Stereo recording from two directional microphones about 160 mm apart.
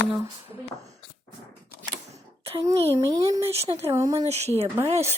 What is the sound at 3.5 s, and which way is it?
Speech, 40° right (ahead or behind).